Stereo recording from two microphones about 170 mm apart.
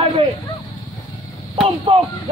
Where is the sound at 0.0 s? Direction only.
35° right (ahead or behind).